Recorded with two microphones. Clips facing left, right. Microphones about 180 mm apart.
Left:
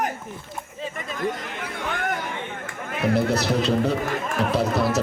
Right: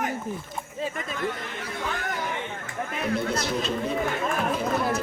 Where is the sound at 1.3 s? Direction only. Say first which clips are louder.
Left 1 dB; 45° left (ahead or behind).